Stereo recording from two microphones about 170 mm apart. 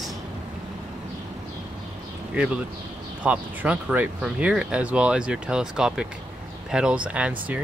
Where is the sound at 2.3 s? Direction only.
5° right (ahead or behind).